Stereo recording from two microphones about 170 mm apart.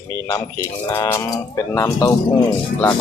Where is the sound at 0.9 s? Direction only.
15° left (ahead or behind).